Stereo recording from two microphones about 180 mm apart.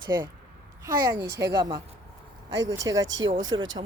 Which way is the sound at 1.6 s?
25° right (ahead or behind).